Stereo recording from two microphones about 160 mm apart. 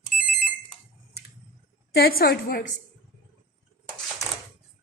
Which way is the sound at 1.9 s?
75° left (ahead or behind).